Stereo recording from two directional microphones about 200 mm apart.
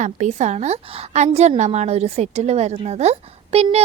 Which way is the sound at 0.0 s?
35° right (ahead or behind).